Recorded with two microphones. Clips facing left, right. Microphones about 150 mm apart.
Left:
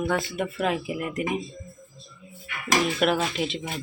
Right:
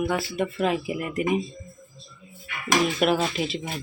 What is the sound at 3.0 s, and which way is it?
Speech, 5° right (ahead or behind).